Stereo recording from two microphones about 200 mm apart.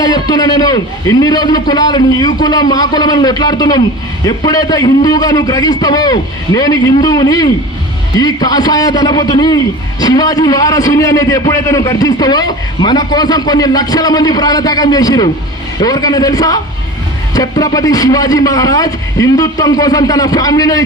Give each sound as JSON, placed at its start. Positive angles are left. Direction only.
{"t": 0.0, "sound": "a man's voice", "side_deg": 20}